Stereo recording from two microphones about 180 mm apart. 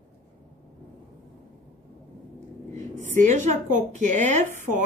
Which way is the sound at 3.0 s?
45° right (ahead or behind).